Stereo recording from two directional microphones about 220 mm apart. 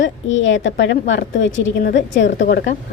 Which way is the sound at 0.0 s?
60° left (ahead or behind).